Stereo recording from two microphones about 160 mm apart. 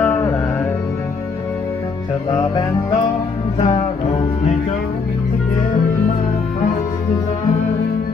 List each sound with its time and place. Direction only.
0.0 s music: 15° left (ahead or behind)
2.5 s music: 30° left (ahead or behind)